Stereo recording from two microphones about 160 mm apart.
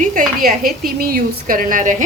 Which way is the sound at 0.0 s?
55° right (ahead or behind).